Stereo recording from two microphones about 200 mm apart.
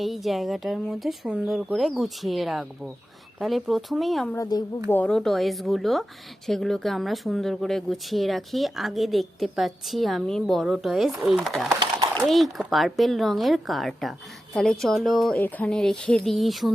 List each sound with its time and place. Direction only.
0.0 s speech: centre (ahead or behind)
4.4 s a woman's voice: 20° left (ahead or behind)
4.9 s speech: 5° left (ahead or behind)